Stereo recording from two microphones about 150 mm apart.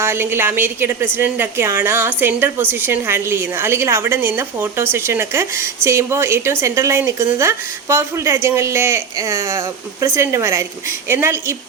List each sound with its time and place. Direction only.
0.0 s a woman's voice: 15° right (ahead or behind)